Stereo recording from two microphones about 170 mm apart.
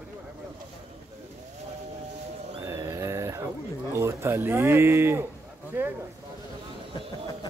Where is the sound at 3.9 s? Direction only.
15° right (ahead or behind).